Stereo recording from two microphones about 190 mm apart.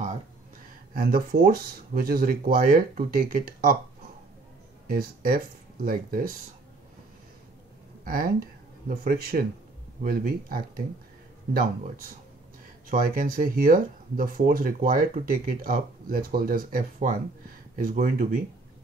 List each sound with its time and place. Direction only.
0.9 s speech: 50° right (ahead or behind)
4.8 s speech: 50° right (ahead or behind)
8.0 s speech: 50° right (ahead or behind)